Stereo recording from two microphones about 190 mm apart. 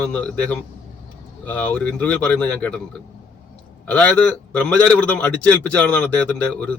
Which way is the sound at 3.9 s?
5° left (ahead or behind).